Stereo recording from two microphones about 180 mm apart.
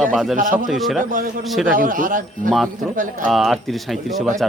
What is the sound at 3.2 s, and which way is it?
Speech, centre (ahead or behind).